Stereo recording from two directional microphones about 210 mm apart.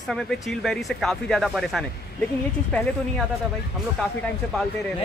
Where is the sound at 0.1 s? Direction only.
Centre (ahead or behind).